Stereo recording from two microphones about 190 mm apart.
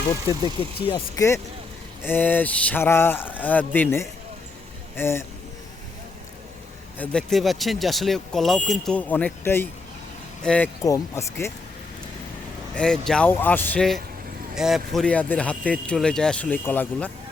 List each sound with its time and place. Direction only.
0.9 s speech: 15° left (ahead or behind)
7.0 s speech: 5° left (ahead or behind)
10.8 s speech: 15° left (ahead or behind)
12.7 s speech: 5° left (ahead or behind)